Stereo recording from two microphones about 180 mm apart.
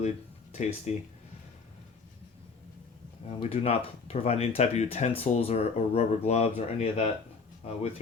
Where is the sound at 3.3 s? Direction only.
35° left (ahead or behind).